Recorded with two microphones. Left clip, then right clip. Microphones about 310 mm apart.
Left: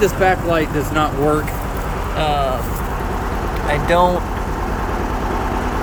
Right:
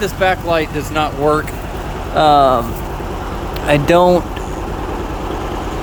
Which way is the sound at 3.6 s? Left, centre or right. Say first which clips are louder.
Right 5 dB; right.